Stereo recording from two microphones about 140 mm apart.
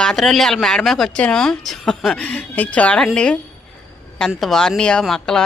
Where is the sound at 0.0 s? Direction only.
5° left (ahead or behind).